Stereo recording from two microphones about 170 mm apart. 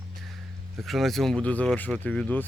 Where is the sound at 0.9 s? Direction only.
Centre (ahead or behind).